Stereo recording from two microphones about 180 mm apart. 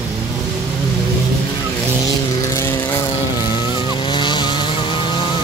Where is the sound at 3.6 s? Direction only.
25° left (ahead or behind).